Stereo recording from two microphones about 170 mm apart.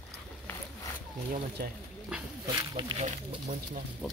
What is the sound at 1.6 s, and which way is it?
Speech, 65° right (ahead or behind).